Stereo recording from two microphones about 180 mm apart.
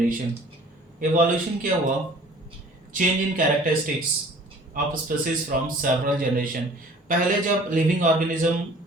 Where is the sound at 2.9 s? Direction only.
45° right (ahead or behind).